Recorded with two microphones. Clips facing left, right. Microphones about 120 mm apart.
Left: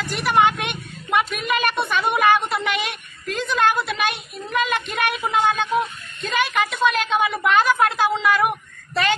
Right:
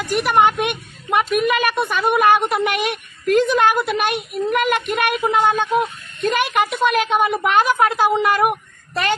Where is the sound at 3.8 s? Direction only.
50° right (ahead or behind).